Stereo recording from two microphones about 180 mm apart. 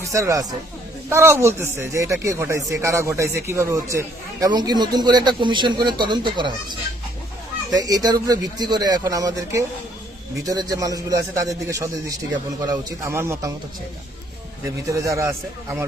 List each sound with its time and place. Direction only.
0.0 s a man's voice: 15° right (ahead or behind)
14.8 s speech: 15° right (ahead or behind)